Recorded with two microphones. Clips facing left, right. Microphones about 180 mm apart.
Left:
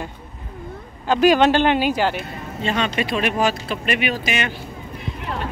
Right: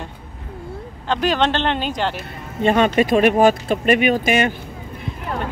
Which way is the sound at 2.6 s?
50° right (ahead or behind).